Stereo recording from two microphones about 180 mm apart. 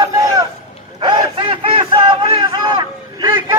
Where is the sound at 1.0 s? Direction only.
25° right (ahead or behind).